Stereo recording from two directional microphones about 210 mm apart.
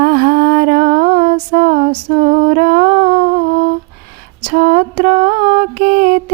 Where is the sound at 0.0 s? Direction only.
40° right (ahead or behind).